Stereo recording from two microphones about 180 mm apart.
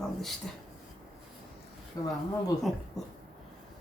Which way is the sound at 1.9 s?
20° left (ahead or behind).